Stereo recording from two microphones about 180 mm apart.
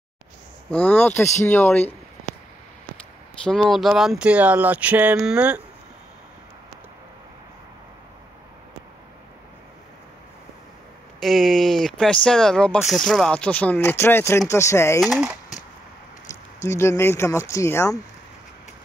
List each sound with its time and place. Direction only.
0.7 s speech: 10° left (ahead or behind)
3.4 s speech: 5° left (ahead or behind)
11.1 s speech: centre (ahead or behind)
15.0 s speech: centre (ahead or behind)
16.6 s speech: 15° left (ahead or behind)